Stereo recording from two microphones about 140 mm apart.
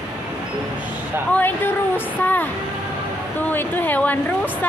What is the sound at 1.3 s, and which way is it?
Speech, 15° left (ahead or behind).